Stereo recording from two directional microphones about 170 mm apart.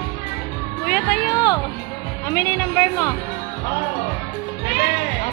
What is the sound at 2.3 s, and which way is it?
Speech, 15° left (ahead or behind).